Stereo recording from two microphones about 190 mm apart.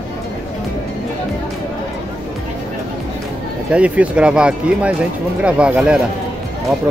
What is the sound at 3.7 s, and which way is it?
Speech, 5° right (ahead or behind).